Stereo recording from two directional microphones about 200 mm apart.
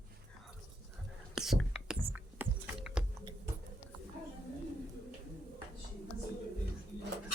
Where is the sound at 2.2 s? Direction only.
10° right (ahead or behind).